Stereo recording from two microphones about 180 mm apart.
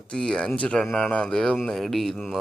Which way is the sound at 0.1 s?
5° left (ahead or behind).